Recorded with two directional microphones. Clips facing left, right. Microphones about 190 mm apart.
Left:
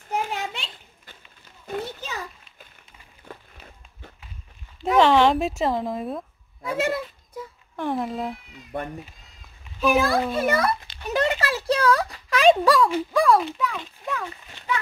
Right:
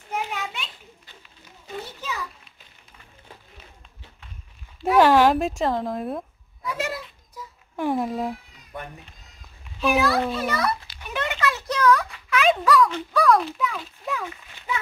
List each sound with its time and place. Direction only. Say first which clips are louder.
0.1 s children playing: left 2 dB; 35° left (ahead or behind)
3.3 s music: left 7 dB; 55° left (ahead or behind)
4.8 s speech: right 1 dB; 5° right (ahead or behind)
6.6 s a sound: left 5 dB; 55° left (ahead or behind)
7.7 s speech: right 2 dB; 10° right (ahead or behind)
9.9 s a child's voice: right 1 dB; 50° left (ahead or behind)
11.1 s a sound: left 3 dB; 35° left (ahead or behind)
12.9 s speech: left 1 dB; 5° left (ahead or behind)